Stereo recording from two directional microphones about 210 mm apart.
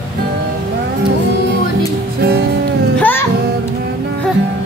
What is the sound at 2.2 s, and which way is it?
Music, 50° right (ahead or behind).